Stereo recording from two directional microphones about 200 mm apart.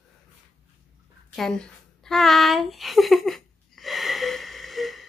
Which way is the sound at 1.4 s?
Centre (ahead or behind).